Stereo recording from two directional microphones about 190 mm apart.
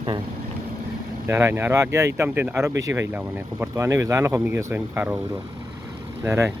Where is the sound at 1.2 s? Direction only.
15° right (ahead or behind).